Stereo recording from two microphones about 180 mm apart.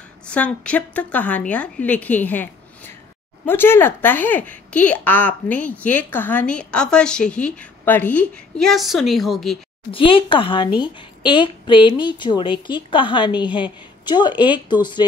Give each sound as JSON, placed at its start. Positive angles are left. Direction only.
{"t": 0.3, "sound": "a woman's voice", "side_deg": 5}
{"t": 9.8, "sound": "a woman's voice", "side_deg": 30}